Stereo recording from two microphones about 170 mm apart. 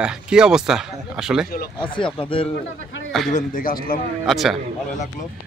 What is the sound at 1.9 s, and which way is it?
Speech, 30° left (ahead or behind).